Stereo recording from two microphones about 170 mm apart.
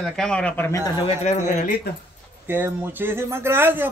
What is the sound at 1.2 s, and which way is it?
Speech, 45° left (ahead or behind).